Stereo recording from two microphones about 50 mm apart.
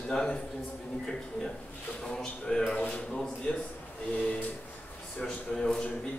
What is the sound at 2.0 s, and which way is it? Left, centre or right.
Speech, centre.